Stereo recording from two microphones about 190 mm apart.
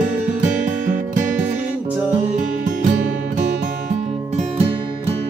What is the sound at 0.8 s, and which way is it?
Music, 40° right (ahead or behind).